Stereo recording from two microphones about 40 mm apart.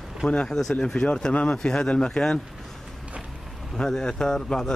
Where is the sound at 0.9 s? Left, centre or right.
Centre.